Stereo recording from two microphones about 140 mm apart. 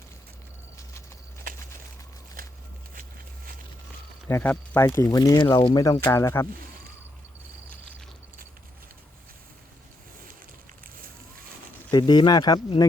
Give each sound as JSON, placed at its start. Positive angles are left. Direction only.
{"t": 2.9, "sound": "a sound", "side_deg": -85}
{"t": 4.3, "sound": "speech", "side_deg": 15}
{"t": 11.9, "sound": "speech", "side_deg": 30}